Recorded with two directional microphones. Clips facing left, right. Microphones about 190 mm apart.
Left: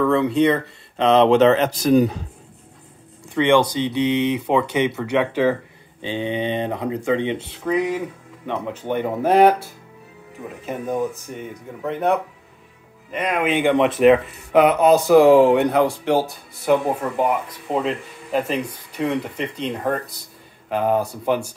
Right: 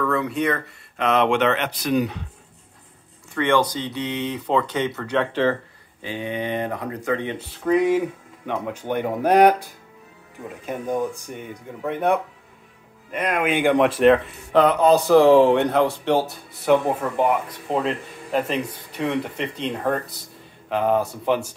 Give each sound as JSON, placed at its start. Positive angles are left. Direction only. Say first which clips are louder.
{"t": 0.0, "sound": "speech", "louder": "left 6 dB", "side_deg": 25}
{"t": 3.3, "sound": "speech", "louder": "left 4 dB", "side_deg": 15}
{"t": 6.0, "sound": "speech", "louder": "left 4 dB", "side_deg": 25}
{"t": 7.6, "sound": "speech", "louder": "right 3 dB", "side_deg": 0}